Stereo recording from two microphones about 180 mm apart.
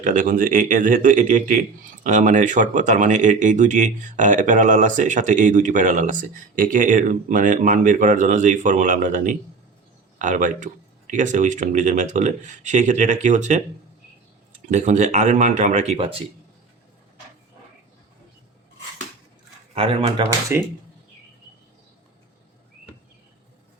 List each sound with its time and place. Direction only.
0.0 s a man's voice: 45° right (ahead or behind)
14.7 s speech: 40° right (ahead or behind)
19.7 s speech: 35° right (ahead or behind)
20.5 s speech: 10° right (ahead or behind)